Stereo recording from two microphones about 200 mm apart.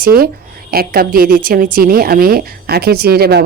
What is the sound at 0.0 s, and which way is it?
A woman's voice, 50° right (ahead or behind).